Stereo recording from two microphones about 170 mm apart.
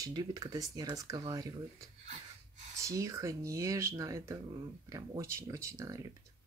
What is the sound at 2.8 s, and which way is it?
Speech, 20° right (ahead or behind).